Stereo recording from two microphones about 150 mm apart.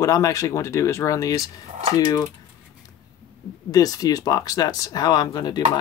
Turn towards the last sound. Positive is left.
turn(degrees=30)  # may be behind; listen again after turning